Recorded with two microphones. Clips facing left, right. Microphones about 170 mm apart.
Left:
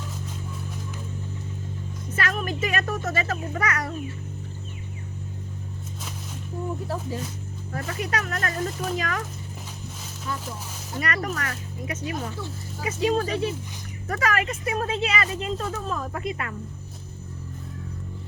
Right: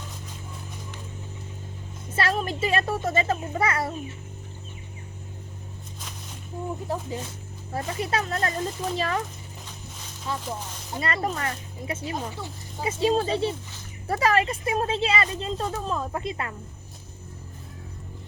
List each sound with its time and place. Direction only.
2.1 s speech: 30° right (ahead or behind)
6.8 s speech: 20° right (ahead or behind)
11.0 s speech: 25° right (ahead or behind)